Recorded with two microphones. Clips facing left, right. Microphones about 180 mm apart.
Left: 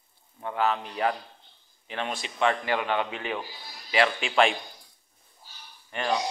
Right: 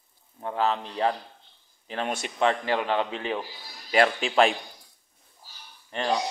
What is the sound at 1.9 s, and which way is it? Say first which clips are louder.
Speech: right 3 dB; 45° right (ahead or behind).